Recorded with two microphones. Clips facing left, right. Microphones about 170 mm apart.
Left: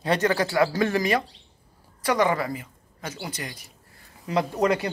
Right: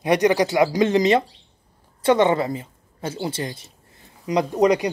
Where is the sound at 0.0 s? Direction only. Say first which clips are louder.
Right 5 dB; 15° right (ahead or behind).